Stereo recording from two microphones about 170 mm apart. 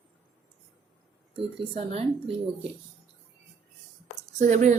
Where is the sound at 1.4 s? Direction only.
35° right (ahead or behind).